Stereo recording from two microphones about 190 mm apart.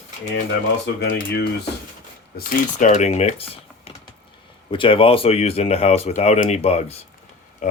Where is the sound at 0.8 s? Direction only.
65° left (ahead or behind).